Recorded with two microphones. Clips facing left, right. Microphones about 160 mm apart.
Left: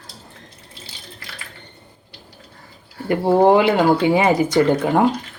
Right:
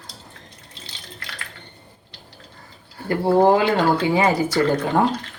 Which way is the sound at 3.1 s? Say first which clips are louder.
Left 2 dB; 20° left (ahead or behind).